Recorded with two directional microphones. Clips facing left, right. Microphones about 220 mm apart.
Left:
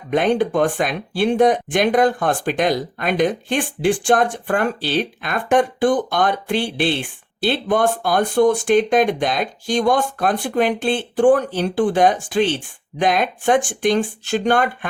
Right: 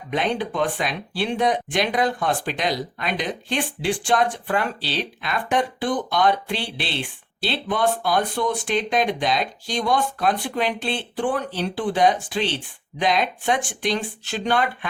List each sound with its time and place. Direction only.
0.1 s speech: 50° left (ahead or behind)